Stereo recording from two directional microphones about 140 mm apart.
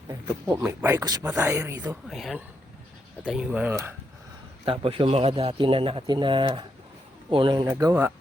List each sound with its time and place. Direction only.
0.4 s speech: 15° right (ahead or behind)
2.0 s speech: centre (ahead or behind); by 3.9 s 15° right (ahead or behind)
4.6 s speech: 40° right (ahead or behind); by 7.9 s 25° right (ahead or behind)